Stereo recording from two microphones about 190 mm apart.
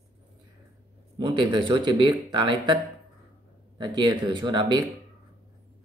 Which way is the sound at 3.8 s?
25° right (ahead or behind).